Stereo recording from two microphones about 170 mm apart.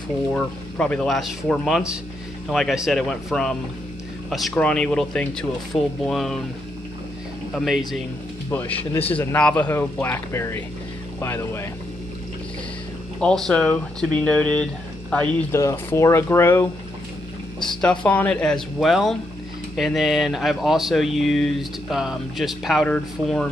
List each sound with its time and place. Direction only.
0.3 s speech: 5° left (ahead or behind)
7.5 s speech: centre (ahead or behind)
8.5 s speech: 10° left (ahead or behind)
13.2 s speech: 5° left (ahead or behind)
17.6 s speech: 5° left (ahead or behind)